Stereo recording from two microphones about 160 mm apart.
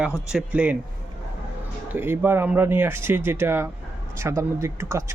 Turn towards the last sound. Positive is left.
turn(degrees=-15)  # may be behind; listen again after turning